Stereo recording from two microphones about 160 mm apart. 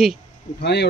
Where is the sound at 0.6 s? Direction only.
90° left.